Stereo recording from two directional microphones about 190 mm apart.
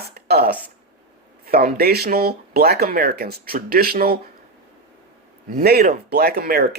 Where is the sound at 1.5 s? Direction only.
55° right (ahead or behind).